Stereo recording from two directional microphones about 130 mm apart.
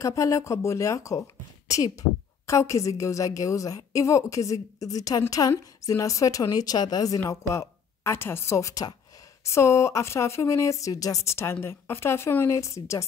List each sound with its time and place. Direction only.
0.0 s a woman's voice: 25° left (ahead or behind)